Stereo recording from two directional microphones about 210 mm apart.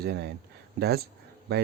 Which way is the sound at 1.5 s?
50° right (ahead or behind).